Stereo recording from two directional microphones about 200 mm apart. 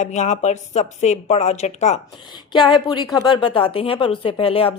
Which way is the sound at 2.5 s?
25° left (ahead or behind).